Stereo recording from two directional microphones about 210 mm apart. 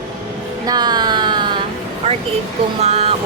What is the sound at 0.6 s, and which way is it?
Speech, 20° right (ahead or behind).